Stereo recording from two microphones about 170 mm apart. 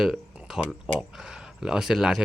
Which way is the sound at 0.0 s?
Centre (ahead or behind).